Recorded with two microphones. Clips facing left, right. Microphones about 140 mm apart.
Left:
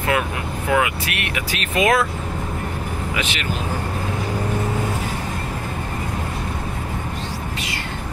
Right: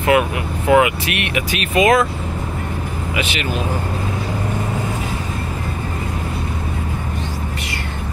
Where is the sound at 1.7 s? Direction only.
Centre (ahead or behind).